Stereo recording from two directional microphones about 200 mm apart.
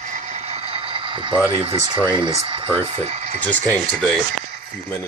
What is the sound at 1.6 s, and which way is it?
Speech, 30° right (ahead or behind).